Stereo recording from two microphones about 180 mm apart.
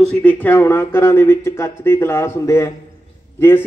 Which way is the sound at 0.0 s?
5° left (ahead or behind).